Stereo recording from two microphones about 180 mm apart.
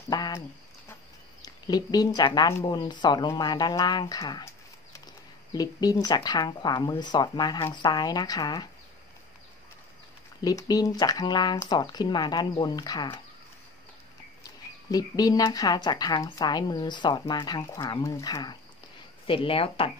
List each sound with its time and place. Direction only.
0.1 s a sound: 20° left (ahead or behind)
1.4 s speech: 20° left (ahead or behind)
5.5 s speech: 20° left (ahead or behind)
10.4 s speech: 20° left (ahead or behind)
14.4 s speech: 20° left (ahead or behind)